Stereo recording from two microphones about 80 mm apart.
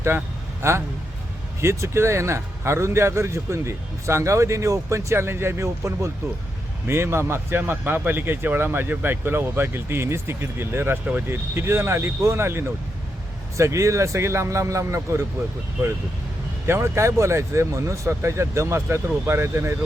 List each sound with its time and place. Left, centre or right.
1.6 s speech: right
16.6 s speech: right